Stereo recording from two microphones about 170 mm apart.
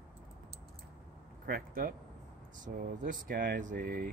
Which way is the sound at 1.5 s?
55° right (ahead or behind).